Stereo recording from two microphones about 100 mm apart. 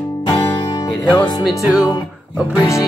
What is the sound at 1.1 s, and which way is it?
Speech, centre (ahead or behind).